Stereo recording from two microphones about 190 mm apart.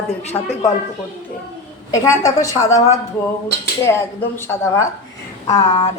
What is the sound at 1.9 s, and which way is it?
Speech, 15° left (ahead or behind).